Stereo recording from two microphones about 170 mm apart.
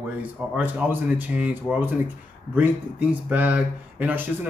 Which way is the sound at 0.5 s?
10° right (ahead or behind).